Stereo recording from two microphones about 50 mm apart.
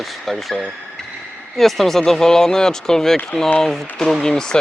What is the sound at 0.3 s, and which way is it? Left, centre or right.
Speech, centre.